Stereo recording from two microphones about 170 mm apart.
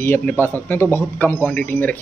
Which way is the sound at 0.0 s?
10° left (ahead or behind).